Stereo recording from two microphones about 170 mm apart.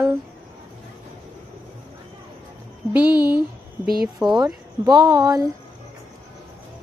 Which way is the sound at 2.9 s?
10° right (ahead or behind).